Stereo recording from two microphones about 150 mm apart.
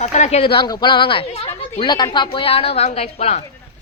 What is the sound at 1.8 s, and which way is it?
Speech, 30° left (ahead or behind).